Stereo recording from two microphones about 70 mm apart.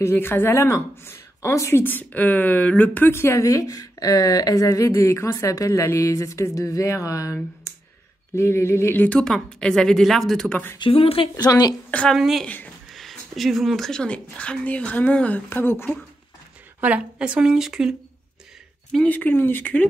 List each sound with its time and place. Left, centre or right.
0.1 s speech: left
1.8 s speech: left
3.1 s speech: left
8.4 s speech: left
8.9 s speech: left
9.2 s speech: centre
11.3 s speech: left
12.2 s speech: centre; by 15.4 s left
15.5 s speech: left
16.8 s speech: centre
19.0 s speech: left